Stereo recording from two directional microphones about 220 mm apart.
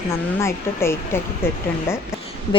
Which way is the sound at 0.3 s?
10° left (ahead or behind).